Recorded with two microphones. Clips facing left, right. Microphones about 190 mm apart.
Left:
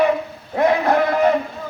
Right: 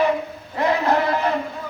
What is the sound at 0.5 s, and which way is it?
Speech, 50° left (ahead or behind).